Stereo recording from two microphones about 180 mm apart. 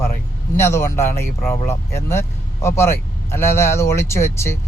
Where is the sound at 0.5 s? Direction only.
15° left (ahead or behind).